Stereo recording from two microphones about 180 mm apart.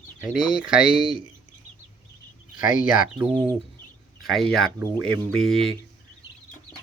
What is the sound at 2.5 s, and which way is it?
Speech, 50° left (ahead or behind).